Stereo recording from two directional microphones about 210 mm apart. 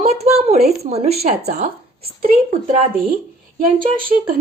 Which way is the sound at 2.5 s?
30° right (ahead or behind).